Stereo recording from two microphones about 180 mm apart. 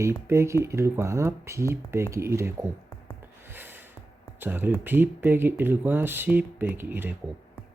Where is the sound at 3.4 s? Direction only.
10° right (ahead or behind).